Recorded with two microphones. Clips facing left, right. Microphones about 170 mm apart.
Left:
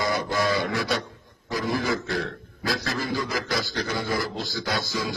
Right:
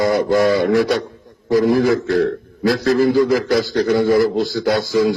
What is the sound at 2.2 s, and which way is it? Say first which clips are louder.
Speech: right 14 dB; 55° right (ahead or behind).